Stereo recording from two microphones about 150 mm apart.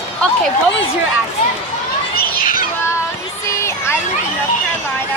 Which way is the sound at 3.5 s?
20° left (ahead or behind).